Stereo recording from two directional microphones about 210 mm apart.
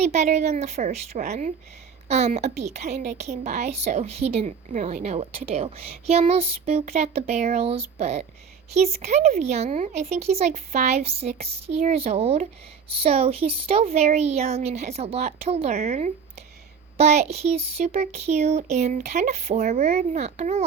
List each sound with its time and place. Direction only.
0.0 s a woman's voice: 30° right (ahead or behind)